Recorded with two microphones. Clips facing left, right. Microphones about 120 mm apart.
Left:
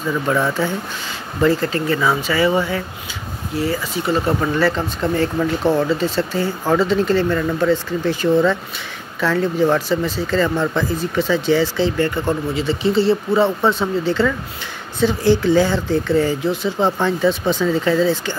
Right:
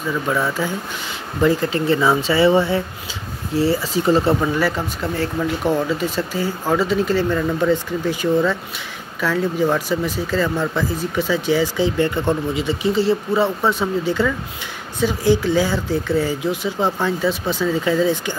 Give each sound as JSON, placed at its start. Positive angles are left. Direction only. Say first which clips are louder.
{"t": 0.3, "sound": "speech", "louder": "left 3 dB", "side_deg": -10}
{"t": 1.9, "sound": "speech", "louder": "right 3 dB", "side_deg": -25}
{"t": 4.3, "sound": "speech", "louder": "left 1 dB", "side_deg": -5}